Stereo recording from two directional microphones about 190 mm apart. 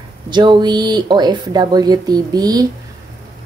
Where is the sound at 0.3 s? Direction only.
25° right (ahead or behind).